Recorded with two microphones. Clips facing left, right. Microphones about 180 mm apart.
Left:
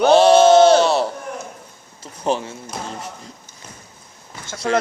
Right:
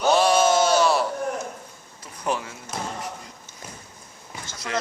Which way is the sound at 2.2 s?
30° left (ahead or behind).